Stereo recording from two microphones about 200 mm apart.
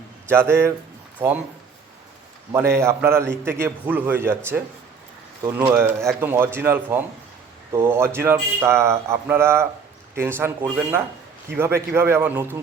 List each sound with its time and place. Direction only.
0.3 s a man's voice: 10° right (ahead or behind)
2.5 s a man's voice: 15° right (ahead or behind)